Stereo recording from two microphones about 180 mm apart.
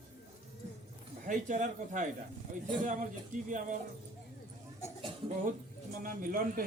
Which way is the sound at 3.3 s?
45° right (ahead or behind).